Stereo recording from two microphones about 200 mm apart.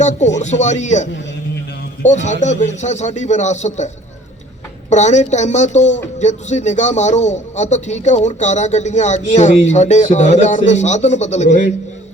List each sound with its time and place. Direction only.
0.0 s speech: 35° left (ahead or behind)
2.0 s speech: 35° left (ahead or behind)
4.9 s speech: 35° left (ahead or behind)